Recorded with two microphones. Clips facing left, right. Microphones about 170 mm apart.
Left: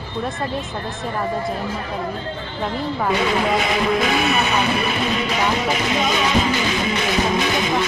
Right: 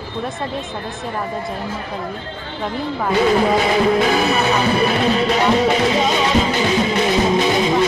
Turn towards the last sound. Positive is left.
turn(degrees=-30)  # may be behind; listen again after turning